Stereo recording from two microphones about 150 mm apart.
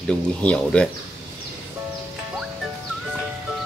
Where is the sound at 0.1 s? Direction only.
5° left (ahead or behind).